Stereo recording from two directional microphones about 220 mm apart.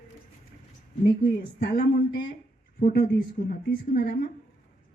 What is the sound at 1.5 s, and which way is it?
A woman's voice, 50° left (ahead or behind).